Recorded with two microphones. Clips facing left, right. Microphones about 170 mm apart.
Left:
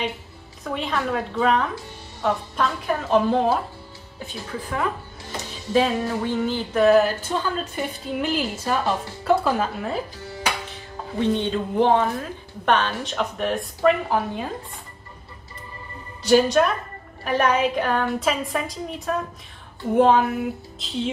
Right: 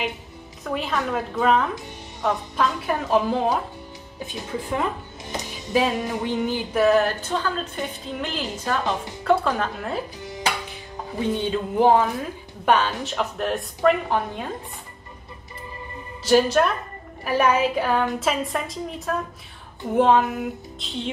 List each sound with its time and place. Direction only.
0.7 s a woman's voice: centre (ahead or behind)
4.3 s speech: 20° right (ahead or behind)
5.9 s music: 15° right (ahead or behind)
6.8 s a woman's voice: centre (ahead or behind)
8.8 s a woman's voice: 20° right (ahead or behind)
9.2 s a woman's voice: 5° left (ahead or behind)
10.1 s music: 20° right (ahead or behind)
11.1 s a woman's voice: 5° right (ahead or behind)
12.6 s music: 5° right (ahead or behind)
13.0 s a woman's voice: 5° right (ahead or behind)
16.3 s a woman's voice: centre (ahead or behind)